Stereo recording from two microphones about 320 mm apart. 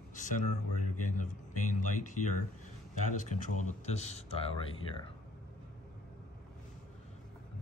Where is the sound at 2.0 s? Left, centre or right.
Left.